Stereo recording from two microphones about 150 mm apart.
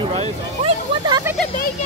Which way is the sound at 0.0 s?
35° right (ahead or behind).